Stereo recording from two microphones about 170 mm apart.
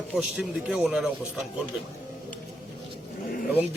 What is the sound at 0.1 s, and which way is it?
Speech, 5° right (ahead or behind).